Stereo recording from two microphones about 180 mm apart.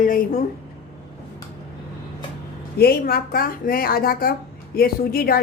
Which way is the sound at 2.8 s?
60° left (ahead or behind).